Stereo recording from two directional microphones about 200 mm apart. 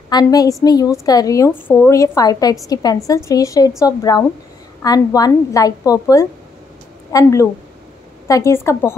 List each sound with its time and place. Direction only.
0.1 s a woman's voice: 20° left (ahead or behind)